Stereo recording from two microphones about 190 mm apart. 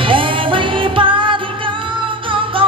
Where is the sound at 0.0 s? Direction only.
25° right (ahead or behind).